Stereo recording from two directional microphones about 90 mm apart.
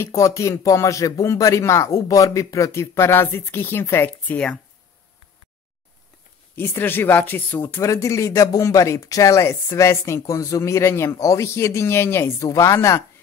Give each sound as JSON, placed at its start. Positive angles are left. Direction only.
{"t": 0.0, "sound": "speech", "side_deg": 35}
{"t": 6.5, "sound": "speech", "side_deg": 25}
{"t": 7.8, "sound": "speech", "side_deg": 35}